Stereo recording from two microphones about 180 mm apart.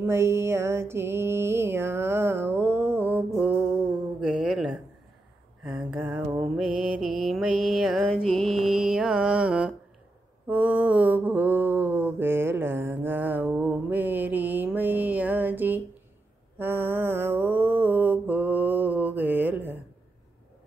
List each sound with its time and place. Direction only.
0.0 s mantra: 15° right (ahead or behind)
4.2 s a sound: 5° right (ahead or behind)
6.5 s mantra: 5° right (ahead or behind)